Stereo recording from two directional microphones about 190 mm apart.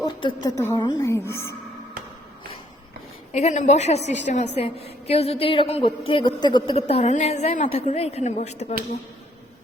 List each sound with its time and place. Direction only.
0.0 s a woman's voice: 25° left (ahead or behind)
3.3 s a woman's voice: 35° left (ahead or behind)